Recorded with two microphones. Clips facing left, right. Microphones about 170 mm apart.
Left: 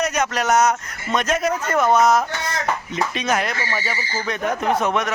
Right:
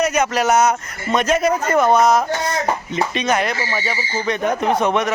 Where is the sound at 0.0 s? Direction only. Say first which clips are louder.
Right 4 dB; centre (ahead or behind).